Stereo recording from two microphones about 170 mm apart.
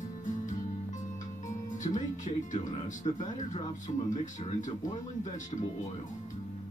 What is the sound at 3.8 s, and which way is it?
Speech, 45° left (ahead or behind).